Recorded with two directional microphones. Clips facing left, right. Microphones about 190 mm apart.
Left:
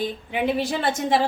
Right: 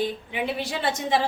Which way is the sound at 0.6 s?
50° left (ahead or behind).